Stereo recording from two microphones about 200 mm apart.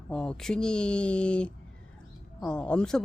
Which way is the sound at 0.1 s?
5° left (ahead or behind).